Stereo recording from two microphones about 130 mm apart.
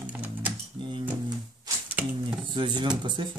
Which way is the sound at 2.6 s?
35° right (ahead or behind).